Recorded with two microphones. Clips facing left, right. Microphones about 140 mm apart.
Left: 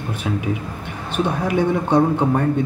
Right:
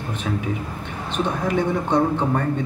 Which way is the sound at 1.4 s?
10° left (ahead or behind).